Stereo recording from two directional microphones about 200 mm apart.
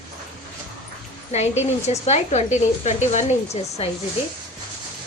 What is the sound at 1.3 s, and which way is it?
A woman's voice, 35° left (ahead or behind).